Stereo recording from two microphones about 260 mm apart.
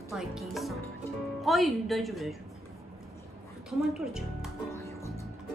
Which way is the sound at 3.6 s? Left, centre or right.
Centre.